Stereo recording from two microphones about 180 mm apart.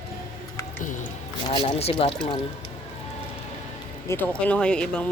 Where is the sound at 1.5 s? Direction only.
30° left (ahead or behind).